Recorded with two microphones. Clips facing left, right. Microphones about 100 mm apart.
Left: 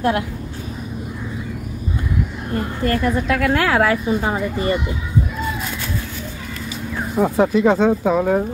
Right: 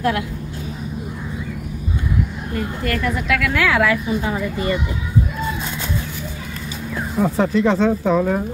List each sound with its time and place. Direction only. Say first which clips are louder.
2.5 s a woman's voice: left 3 dB; 30° left (ahead or behind)
7.2 s speech: left 2 dB; 10° left (ahead or behind)